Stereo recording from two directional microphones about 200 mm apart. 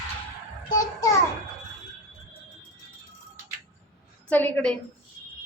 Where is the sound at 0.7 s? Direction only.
20° left (ahead or behind).